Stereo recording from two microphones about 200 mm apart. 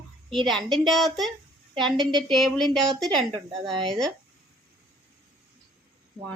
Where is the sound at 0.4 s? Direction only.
Centre (ahead or behind).